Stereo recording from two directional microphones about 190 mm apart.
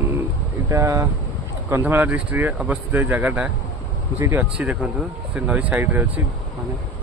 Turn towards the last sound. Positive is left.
turn(degrees=-10)  # may be behind; listen again after turning